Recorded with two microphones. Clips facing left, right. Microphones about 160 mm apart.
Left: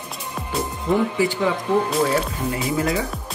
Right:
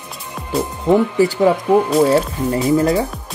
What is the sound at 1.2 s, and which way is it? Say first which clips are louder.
Speech: right 7 dB; 45° right (ahead or behind).